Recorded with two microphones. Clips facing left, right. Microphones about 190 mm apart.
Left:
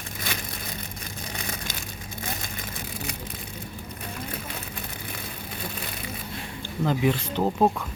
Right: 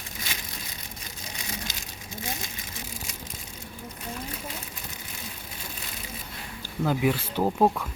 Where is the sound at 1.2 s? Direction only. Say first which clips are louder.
Left 2 dB; 55° left (ahead or behind).